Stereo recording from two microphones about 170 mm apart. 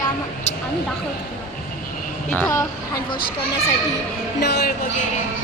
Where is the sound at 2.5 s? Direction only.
20° left (ahead or behind).